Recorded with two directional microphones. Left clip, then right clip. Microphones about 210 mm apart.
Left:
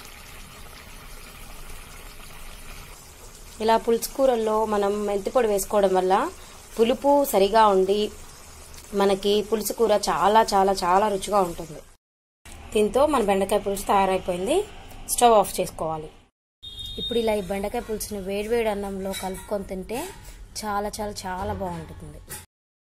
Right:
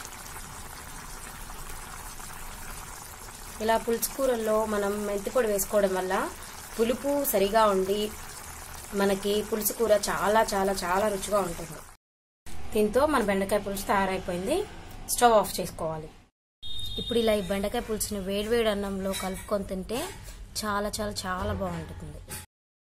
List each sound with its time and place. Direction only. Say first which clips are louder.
3.6 s speech: left 5 dB; 15° left (ahead or behind)
12.7 s speech: left 4 dB; 10° left (ahead or behind)
17.1 s speech: left 1 dB; 5° left (ahead or behind)